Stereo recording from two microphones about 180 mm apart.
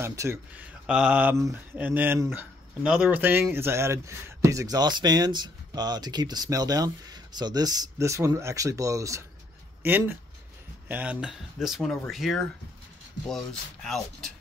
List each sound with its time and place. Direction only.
0.0 s speech: 15° right (ahead or behind); by 14.3 s centre (ahead or behind)